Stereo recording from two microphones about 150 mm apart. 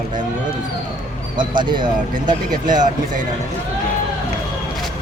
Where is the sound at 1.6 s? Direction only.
30° right (ahead or behind).